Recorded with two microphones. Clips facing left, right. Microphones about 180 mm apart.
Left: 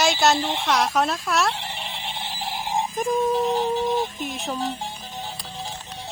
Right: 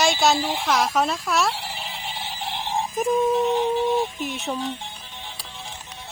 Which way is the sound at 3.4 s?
35° left (ahead or behind).